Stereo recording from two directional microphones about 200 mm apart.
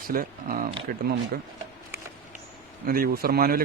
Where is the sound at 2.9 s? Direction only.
45° right (ahead or behind).